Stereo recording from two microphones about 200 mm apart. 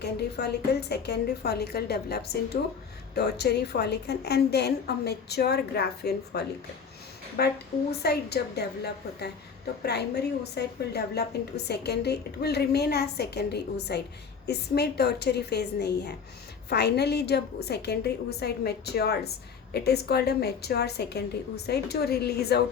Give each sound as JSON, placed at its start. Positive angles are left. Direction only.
{"t": 0.0, "sound": "a woman's voice", "side_deg": 55}